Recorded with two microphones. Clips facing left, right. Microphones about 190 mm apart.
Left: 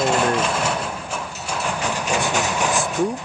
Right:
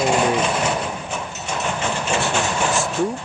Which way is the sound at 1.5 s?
Centre (ahead or behind).